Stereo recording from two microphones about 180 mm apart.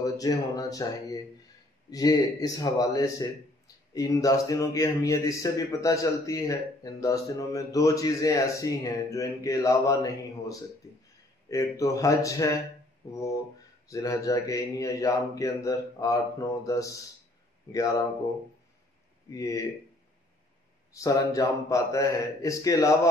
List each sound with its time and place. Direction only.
0.0 s a man's voice: 20° left (ahead or behind)
19.3 s speech: 20° left (ahead or behind)
20.9 s speech: 20° left (ahead or behind)